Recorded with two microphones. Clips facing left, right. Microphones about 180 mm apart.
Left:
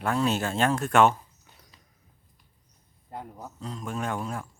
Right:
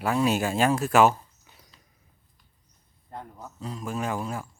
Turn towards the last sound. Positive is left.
turn(degrees=-5)  # may be behind; listen again after turning